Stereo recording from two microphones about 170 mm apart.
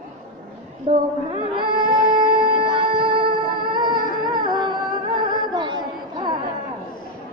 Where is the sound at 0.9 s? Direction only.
30° right (ahead or behind).